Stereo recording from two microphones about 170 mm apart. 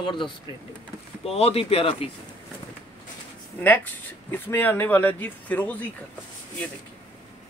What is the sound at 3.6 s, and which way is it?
Speech, 10° left (ahead or behind).